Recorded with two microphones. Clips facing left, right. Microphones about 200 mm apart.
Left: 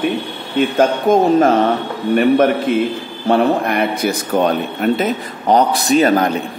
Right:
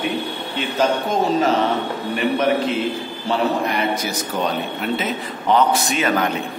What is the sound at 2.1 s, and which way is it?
A man's voice, 50° left (ahead or behind).